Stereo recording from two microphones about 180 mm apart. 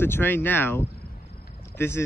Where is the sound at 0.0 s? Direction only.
10° left (ahead or behind).